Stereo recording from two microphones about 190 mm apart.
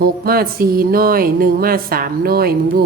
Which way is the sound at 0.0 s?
50° right (ahead or behind).